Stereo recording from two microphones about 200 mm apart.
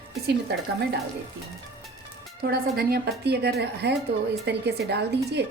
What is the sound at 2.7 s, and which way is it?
A woman's voice, 50° right (ahead or behind).